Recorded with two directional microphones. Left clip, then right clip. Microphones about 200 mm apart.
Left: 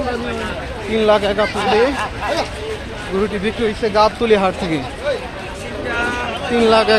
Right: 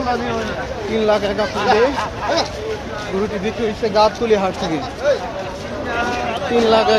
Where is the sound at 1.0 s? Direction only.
35° left (ahead or behind).